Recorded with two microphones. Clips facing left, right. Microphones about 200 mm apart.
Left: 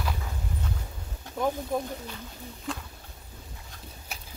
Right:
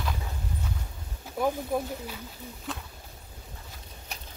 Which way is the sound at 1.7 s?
5° right (ahead or behind).